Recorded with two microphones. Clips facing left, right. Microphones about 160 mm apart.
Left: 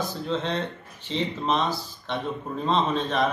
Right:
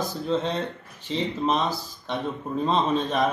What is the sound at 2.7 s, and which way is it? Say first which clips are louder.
Speech: even; centre (ahead or behind).